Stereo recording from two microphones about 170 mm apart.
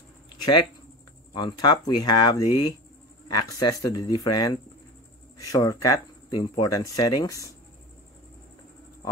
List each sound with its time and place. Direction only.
1.3 s speech: 25° left (ahead or behind)